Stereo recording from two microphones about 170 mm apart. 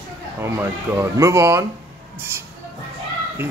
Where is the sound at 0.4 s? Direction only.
15° right (ahead or behind).